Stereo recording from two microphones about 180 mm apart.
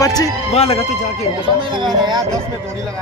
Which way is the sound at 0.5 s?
35° left (ahead or behind).